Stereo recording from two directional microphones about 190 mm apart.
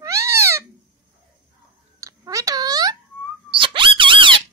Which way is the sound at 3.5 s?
25° right (ahead or behind).